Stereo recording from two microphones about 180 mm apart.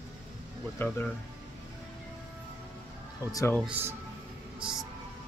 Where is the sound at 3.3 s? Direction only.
20° left (ahead or behind).